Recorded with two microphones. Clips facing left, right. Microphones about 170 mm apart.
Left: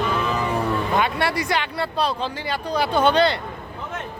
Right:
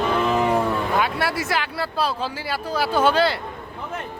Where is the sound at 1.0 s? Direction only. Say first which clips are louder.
Left 1 dB; 5° right (ahead or behind).